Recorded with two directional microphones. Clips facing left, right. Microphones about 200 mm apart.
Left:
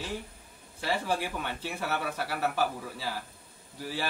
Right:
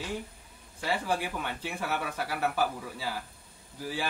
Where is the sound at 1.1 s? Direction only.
5° right (ahead or behind).